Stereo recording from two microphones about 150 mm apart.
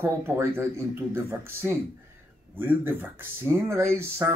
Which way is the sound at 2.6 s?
15° right (ahead or behind).